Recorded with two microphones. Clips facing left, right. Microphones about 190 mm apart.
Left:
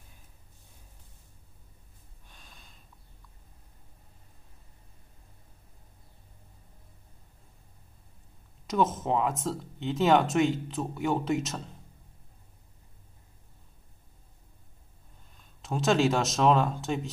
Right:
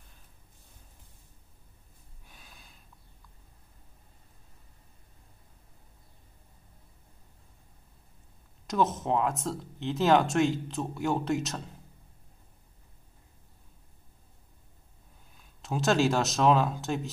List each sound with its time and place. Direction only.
2.2 s snort: 5° right (ahead or behind)
8.6 s speech: centre (ahead or behind)
15.3 s speech: centre (ahead or behind)